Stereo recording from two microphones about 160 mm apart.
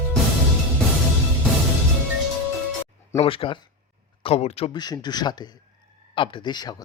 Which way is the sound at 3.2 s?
35° left (ahead or behind).